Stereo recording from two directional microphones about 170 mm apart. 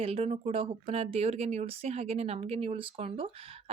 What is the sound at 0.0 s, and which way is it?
Speech, 35° right (ahead or behind).